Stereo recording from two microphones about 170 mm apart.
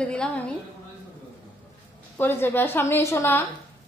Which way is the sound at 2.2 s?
15° left (ahead or behind).